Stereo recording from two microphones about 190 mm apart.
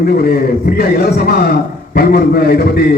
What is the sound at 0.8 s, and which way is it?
A man's voice, 55° left (ahead or behind).